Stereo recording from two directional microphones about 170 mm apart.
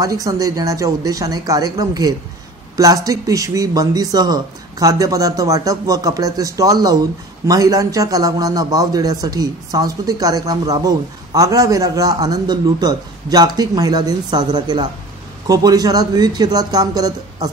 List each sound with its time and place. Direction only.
0.0 s a man's voice: 20° right (ahead or behind)